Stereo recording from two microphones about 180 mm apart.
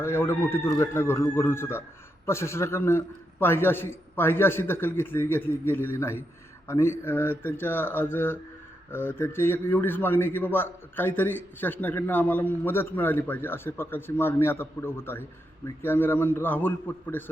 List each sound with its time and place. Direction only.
0.0 s a man's voice: 15° left (ahead or behind)